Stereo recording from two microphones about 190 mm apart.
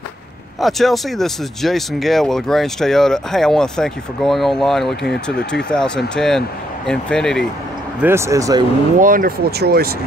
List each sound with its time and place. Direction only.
0.6 s speech: centre (ahead or behind)
5.0 s speech: 60° left (ahead or behind)
5.7 s speech: 5° left (ahead or behind)
8.0 s speech: 15° right (ahead or behind)
9.0 s speech: 45° right (ahead or behind)